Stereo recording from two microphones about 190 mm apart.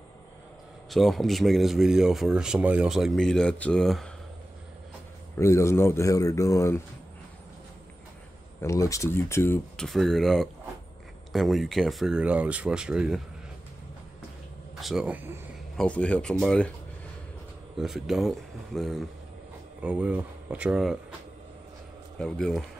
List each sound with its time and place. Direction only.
0.8 s speech: centre (ahead or behind)
5.4 s speech: 15° left (ahead or behind)
8.6 s speech: 15° left (ahead or behind)
9.8 s speech: centre (ahead or behind)
14.8 s speech: centre (ahead or behind)
15.7 s speech: 5° left (ahead or behind)
17.7 s speech: centre (ahead or behind)
22.2 s speech: centre (ahead or behind)